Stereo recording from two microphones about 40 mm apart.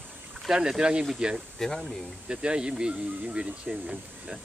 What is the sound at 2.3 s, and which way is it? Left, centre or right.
Speech, right.